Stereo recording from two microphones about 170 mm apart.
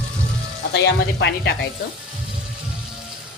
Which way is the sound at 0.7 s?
90° left.